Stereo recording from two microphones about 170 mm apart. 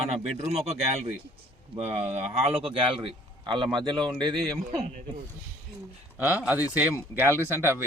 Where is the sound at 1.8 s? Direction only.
40° right (ahead or behind); by 4.8 s 25° right (ahead or behind).